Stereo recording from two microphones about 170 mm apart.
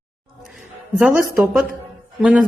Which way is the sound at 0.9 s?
Centre (ahead or behind).